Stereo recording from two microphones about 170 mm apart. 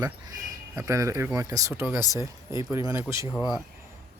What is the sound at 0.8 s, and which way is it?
Speech, 20° right (ahead or behind).